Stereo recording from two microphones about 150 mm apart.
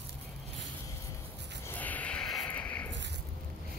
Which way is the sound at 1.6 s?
10° left (ahead or behind).